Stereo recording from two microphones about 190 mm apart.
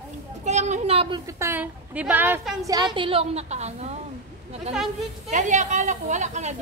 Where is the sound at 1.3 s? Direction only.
15° right (ahead or behind).